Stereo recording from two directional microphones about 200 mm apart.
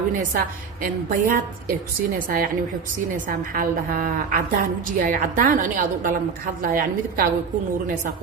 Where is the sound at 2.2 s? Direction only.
45° right (ahead or behind).